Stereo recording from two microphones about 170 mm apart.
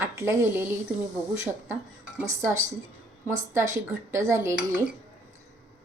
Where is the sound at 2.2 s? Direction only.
15° right (ahead or behind).